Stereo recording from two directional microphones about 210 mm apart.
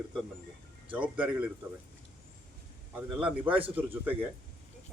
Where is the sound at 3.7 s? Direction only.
10° right (ahead or behind).